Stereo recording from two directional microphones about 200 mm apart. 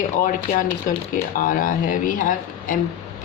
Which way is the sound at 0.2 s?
45° left (ahead or behind).